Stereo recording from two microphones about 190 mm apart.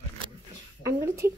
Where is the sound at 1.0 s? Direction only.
15° right (ahead or behind).